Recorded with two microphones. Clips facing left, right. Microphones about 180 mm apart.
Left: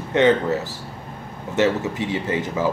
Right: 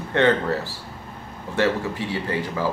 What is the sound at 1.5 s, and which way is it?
Speech, 20° left (ahead or behind).